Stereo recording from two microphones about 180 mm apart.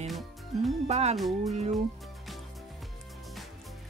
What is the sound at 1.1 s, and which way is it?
Speech, centre (ahead or behind).